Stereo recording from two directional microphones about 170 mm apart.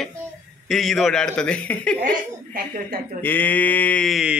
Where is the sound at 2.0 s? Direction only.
55° right (ahead or behind).